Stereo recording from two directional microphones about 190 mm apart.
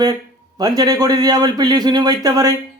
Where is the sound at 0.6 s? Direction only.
20° right (ahead or behind).